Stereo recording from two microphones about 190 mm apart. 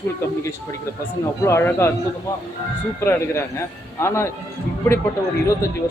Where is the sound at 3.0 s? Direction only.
10° left (ahead or behind).